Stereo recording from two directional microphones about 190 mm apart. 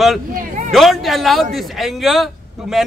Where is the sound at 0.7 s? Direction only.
Centre (ahead or behind).